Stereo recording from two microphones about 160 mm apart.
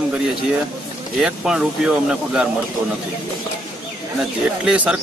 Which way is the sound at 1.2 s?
5° right (ahead or behind).